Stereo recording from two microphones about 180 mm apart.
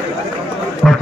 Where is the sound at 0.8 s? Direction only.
Centre (ahead or behind).